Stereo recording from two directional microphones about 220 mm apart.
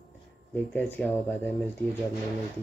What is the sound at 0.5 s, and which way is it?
Speech, 5° left (ahead or behind).